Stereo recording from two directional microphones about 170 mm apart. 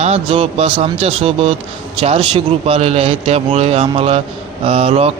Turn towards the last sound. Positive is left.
turn(degrees=-35)  # may be behind; listen again after turning